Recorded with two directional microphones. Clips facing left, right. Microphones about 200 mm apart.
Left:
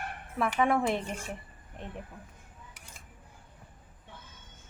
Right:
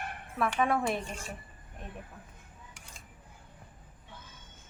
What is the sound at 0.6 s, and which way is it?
Speech, 20° left (ahead or behind).